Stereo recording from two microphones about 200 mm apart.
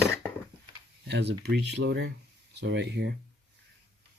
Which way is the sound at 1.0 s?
60° right (ahead or behind).